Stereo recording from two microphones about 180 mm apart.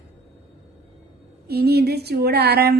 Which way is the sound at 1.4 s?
60° right (ahead or behind).